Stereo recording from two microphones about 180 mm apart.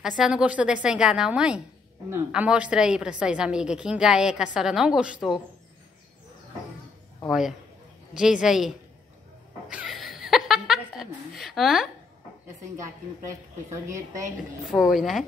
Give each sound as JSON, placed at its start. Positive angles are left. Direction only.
{"t": 0.2, "sound": "a woman's voice", "side_deg": -5}
{"t": 7.2, "sound": "a woman's voice", "side_deg": 0}
{"t": 9.7, "sound": "chuckle", "side_deg": -5}
{"t": 12.7, "sound": "a woman's voice", "side_deg": -15}
{"t": 14.7, "sound": "a woman's voice", "side_deg": 0}